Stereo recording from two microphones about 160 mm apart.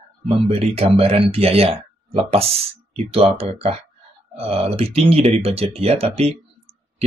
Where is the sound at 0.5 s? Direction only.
40° right (ahead or behind).